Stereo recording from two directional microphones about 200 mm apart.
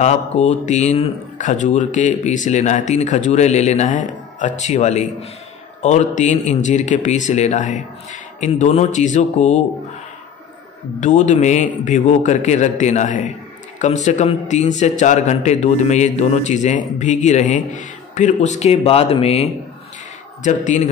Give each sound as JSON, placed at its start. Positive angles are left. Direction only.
{"t": 0.0, "sound": "a man's voice", "side_deg": 35}
{"t": 11.0, "sound": "a man's voice", "side_deg": 40}